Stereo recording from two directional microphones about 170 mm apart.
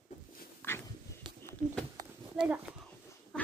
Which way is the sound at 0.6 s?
10° left (ahead or behind).